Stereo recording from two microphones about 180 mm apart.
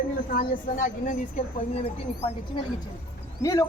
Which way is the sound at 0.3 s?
45° left (ahead or behind).